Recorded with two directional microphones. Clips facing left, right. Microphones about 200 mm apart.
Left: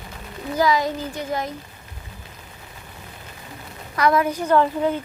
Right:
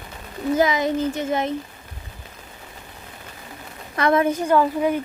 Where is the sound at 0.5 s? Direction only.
20° right (ahead or behind).